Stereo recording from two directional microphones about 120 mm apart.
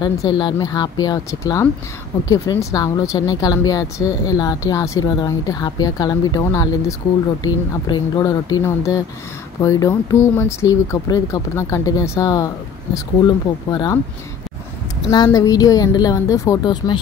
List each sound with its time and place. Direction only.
0.0 s speech: 35° left (ahead or behind)
15.0 s speech: 30° left (ahead or behind)
16.6 s speech: 40° left (ahead or behind)